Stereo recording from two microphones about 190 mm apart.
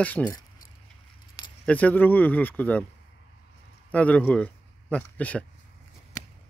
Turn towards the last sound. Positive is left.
turn(degrees=5)  # may be behind; listen again after turning